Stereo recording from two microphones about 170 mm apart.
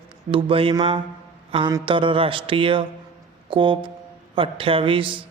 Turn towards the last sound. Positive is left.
turn(degrees=-30)  # may be behind; listen again after turning